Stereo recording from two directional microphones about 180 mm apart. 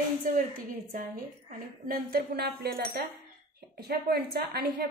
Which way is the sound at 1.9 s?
60° right (ahead or behind).